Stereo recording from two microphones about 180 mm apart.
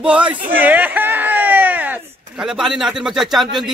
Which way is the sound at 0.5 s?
10° right (ahead or behind).